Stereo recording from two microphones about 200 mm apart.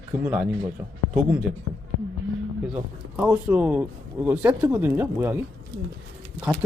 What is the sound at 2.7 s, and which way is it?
Speech, 5° right (ahead or behind).